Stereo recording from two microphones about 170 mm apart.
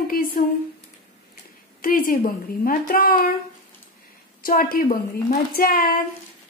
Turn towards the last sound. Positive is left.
turn(degrees=55)  # may be behind; listen again after turning